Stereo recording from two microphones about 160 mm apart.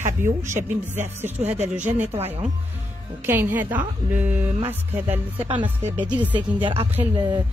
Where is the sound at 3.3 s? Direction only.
10° right (ahead or behind).